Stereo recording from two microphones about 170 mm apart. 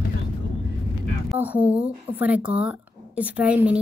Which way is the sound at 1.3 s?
10° right (ahead or behind).